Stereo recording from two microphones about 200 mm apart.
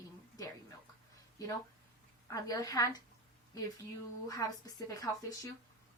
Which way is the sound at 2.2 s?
15° left (ahead or behind).